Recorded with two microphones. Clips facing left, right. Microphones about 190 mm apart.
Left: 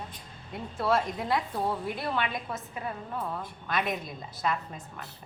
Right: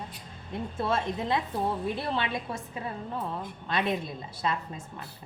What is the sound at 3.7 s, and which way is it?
Speech, 30° right (ahead or behind).